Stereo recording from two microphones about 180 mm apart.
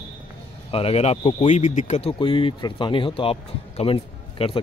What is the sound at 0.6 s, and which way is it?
Speech, 35° left (ahead or behind).